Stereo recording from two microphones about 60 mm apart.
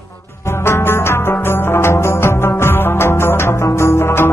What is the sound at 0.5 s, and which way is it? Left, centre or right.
Music, left.